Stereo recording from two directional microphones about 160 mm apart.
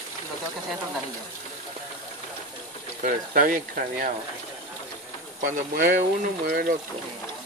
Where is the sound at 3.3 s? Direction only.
55° right (ahead or behind).